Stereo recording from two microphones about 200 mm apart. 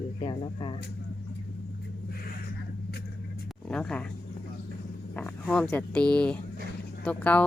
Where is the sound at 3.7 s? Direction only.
5° left (ahead or behind).